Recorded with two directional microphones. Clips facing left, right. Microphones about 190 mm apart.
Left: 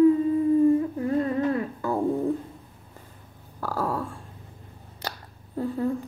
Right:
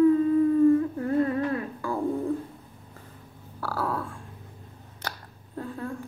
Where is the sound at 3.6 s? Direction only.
15° left (ahead or behind).